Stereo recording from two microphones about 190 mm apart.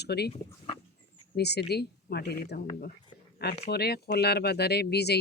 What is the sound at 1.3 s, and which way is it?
Speech, 60° left (ahead or behind).